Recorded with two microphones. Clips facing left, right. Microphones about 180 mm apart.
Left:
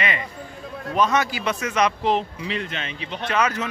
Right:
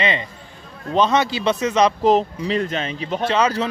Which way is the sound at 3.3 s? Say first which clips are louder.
Right 3 dB; 30° right (ahead or behind).